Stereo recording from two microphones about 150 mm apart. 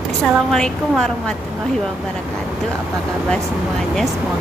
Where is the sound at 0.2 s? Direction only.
5° left (ahead or behind).